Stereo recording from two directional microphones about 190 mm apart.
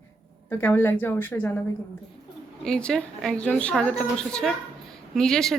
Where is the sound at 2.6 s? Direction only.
5° left (ahead or behind).